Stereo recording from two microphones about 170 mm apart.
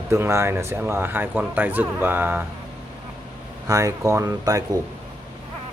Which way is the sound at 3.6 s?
20° right (ahead or behind).